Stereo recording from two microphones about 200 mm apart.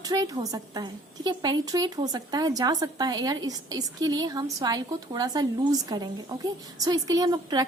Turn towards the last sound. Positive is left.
turn(degrees=-20)  # may be behind; listen again after turning